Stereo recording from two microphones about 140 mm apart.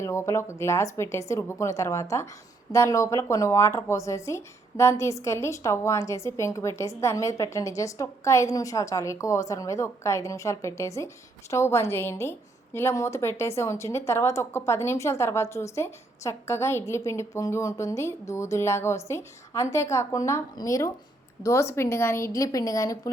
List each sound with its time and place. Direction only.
0.0 s speech: 20° left (ahead or behind)